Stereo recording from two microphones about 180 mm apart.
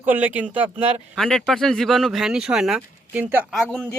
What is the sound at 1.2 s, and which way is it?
Speech, centre (ahead or behind).